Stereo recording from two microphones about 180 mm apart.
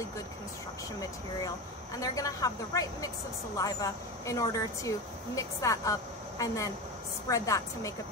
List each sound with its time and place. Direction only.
2.0 s a woman's voice: 20° left (ahead or behind)